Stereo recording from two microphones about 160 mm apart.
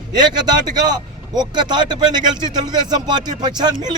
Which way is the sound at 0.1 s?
25° right (ahead or behind).